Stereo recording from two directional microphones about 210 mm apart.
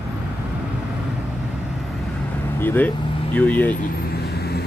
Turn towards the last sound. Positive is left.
turn(degrees=50)  # may be behind; listen again after turning